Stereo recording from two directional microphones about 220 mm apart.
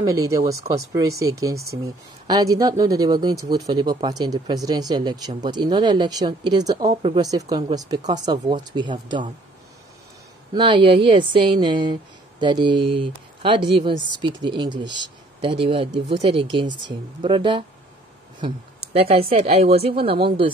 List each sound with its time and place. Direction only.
0.0 s speech: 15° right (ahead or behind)
10.5 s speech: 20° right (ahead or behind)
18.9 s speech: 25° right (ahead or behind)